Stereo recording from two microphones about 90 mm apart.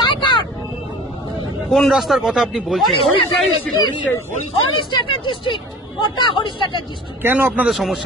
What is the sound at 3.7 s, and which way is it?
Speech, 55° left (ahead or behind).